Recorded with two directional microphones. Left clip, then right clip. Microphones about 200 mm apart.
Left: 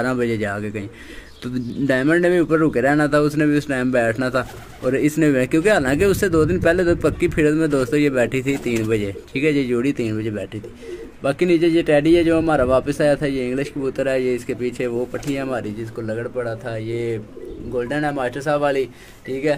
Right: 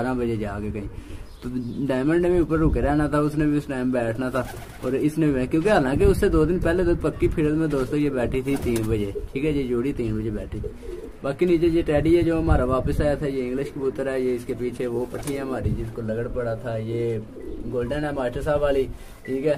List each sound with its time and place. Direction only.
0.0 s a man's voice: 15° left (ahead or behind)